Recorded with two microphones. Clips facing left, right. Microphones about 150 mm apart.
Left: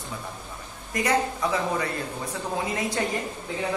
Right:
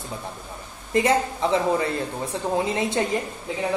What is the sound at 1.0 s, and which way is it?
Speech, 25° right (ahead or behind).